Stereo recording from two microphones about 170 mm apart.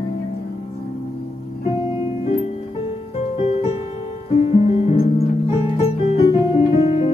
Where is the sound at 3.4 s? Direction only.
40° left (ahead or behind).